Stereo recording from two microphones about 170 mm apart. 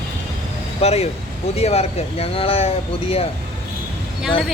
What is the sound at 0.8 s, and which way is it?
Speech, 35° left (ahead or behind).